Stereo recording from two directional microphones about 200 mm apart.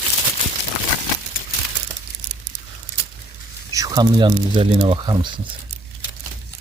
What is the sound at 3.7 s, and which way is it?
Speech, 20° right (ahead or behind).